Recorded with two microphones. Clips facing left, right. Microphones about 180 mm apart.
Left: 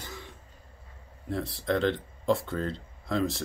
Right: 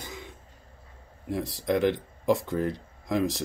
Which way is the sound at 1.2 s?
15° right (ahead or behind).